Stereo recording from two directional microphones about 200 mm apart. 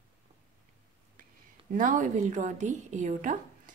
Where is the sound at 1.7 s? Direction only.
40° right (ahead or behind).